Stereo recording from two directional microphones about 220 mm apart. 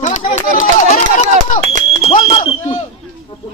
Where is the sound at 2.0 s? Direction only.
25° left (ahead or behind).